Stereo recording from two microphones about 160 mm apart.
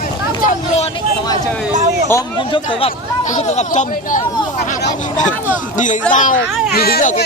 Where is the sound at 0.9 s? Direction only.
30° left (ahead or behind).